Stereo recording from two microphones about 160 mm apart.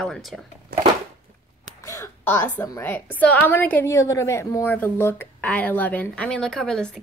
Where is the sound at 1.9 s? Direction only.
15° left (ahead or behind).